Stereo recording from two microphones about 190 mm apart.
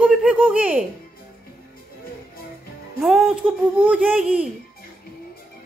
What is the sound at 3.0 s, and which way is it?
A child's voice, centre (ahead or behind).